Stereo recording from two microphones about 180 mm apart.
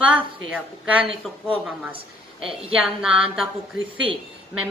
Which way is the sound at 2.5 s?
30° right (ahead or behind).